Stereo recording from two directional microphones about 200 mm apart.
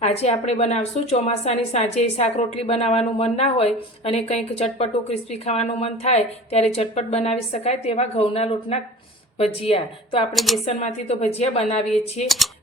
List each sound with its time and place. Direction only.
0.0 s a woman's voice: 30° left (ahead or behind)
10.3 s a woman's voice: centre (ahead or behind)
10.7 s a woman's voice: 35° left (ahead or behind)